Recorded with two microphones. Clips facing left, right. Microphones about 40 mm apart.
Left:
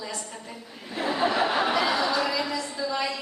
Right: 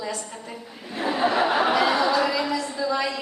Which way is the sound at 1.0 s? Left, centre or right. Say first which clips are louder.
Right 2 dB; centre.